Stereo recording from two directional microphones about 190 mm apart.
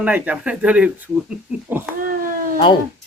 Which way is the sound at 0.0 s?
10° right (ahead or behind).